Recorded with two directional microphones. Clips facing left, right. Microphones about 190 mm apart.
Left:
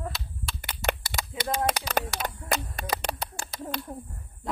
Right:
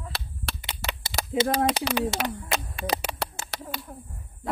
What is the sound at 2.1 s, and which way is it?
Speech, 25° right (ahead or behind).